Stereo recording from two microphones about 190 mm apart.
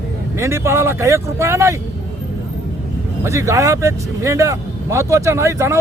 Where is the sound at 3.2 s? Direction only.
15° right (ahead or behind).